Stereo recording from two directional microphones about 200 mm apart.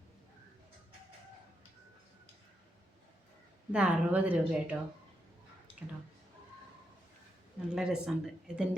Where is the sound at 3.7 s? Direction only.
5° right (ahead or behind).